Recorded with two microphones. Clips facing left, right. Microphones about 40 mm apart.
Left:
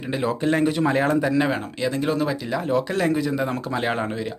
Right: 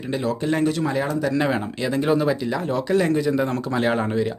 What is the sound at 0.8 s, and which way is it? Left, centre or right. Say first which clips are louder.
Speech: left 3 dB; left.